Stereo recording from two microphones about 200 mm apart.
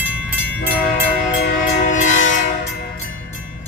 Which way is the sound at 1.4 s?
45° left (ahead or behind).